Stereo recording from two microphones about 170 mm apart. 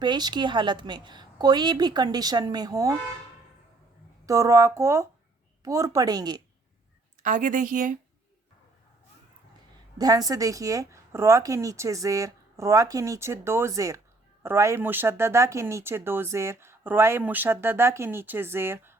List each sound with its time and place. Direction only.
0.0 s speech: 25° right (ahead or behind)
4.3 s speech: 20° right (ahead or behind)
7.2 s speech: 50° right (ahead or behind)
10.0 s speech: 20° right (ahead or behind)